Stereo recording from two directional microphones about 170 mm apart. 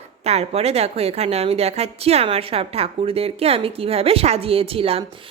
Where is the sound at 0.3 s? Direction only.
40° right (ahead or behind).